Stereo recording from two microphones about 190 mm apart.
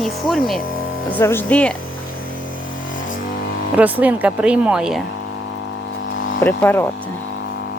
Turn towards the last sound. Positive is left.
turn(degrees=10)  # may be behind; listen again after turning